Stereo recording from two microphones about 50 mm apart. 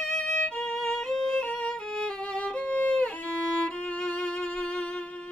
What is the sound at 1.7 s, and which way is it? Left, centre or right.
Music, centre.